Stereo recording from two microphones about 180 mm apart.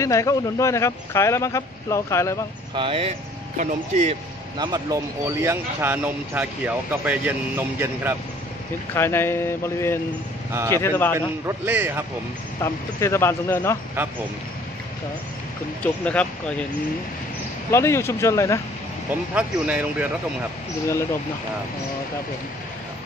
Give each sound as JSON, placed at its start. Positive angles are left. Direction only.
{"t": 0.0, "sound": "a man's voice", "side_deg": 15}
{"t": 2.7, "sound": "speech", "side_deg": -30}
{"t": 4.6, "sound": "speech", "side_deg": -25}
{"t": 8.9, "sound": "a man's voice", "side_deg": 15}
{"t": 11.1, "sound": "speech", "side_deg": -15}
{"t": 13.0, "sound": "a man's voice", "side_deg": 15}
{"t": 15.8, "sound": "a man's voice", "side_deg": 5}
{"t": 17.6, "sound": "a man's voice", "side_deg": 15}
{"t": 19.3, "sound": "speech", "side_deg": -5}